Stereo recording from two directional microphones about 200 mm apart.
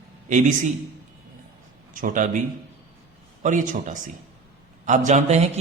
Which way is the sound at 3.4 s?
40° right (ahead or behind).